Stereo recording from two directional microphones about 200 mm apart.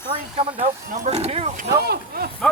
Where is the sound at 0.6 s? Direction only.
30° right (ahead or behind).